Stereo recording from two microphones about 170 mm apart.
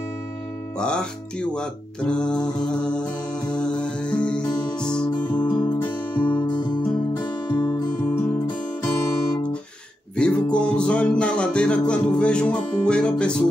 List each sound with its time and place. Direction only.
0.7 s music: 5° left (ahead or behind)
7.5 s music: 10° left (ahead or behind)
10.1 s music: 5° left (ahead or behind)